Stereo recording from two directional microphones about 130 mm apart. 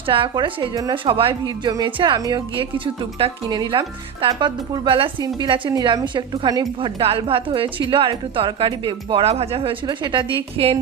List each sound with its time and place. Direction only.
0.0 s a woman's voice: 40° right (ahead or behind)
6.7 s a woman's voice: 45° right (ahead or behind)
9.8 s a woman's voice: 35° right (ahead or behind)